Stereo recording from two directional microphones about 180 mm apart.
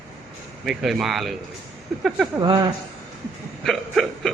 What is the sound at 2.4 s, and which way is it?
Speech, 25° right (ahead or behind).